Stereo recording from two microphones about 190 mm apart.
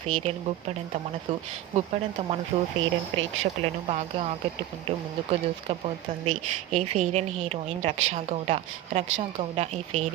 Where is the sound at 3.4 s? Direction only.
30° right (ahead or behind).